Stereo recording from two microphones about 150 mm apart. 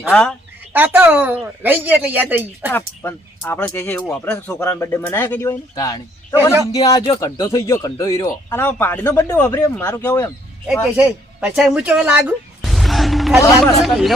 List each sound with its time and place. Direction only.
0.1 s speech: 5° left (ahead or behind)
0.7 s speech: 10° right (ahead or behind)
2.7 s speech: 15° left (ahead or behind)
10.9 s speech: 10° right (ahead or behind)
12.6 s music: centre (ahead or behind)
13.8 s speech: centre (ahead or behind)